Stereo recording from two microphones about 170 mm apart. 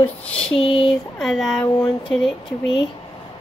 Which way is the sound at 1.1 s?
Centre (ahead or behind).